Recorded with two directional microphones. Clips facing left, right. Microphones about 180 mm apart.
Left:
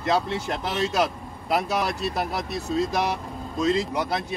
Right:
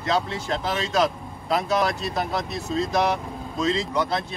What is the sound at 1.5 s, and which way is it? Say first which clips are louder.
Speech: right 2 dB; 10° left (ahead or behind).